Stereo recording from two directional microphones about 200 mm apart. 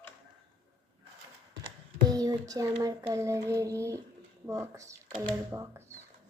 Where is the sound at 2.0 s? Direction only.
20° right (ahead or behind).